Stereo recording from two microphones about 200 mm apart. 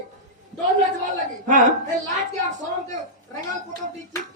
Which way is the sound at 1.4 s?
40° right (ahead or behind).